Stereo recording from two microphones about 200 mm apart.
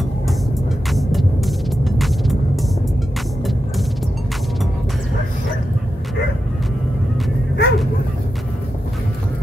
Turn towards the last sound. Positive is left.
turn(degrees=55)  # may be behind; listen again after turning